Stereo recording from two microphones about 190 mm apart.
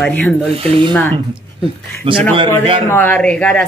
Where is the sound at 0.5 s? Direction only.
30° right (ahead or behind).